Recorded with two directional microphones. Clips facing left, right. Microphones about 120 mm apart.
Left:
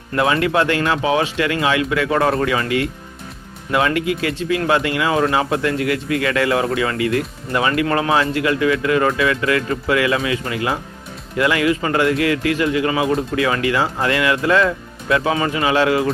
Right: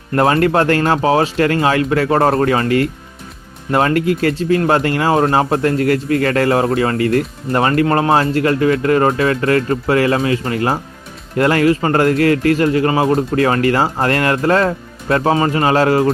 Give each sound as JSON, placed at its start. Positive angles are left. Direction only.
{"t": 0.2, "sound": "a man's voice", "side_deg": -45}